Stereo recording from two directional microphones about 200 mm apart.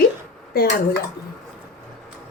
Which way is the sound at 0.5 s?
50° left (ahead or behind).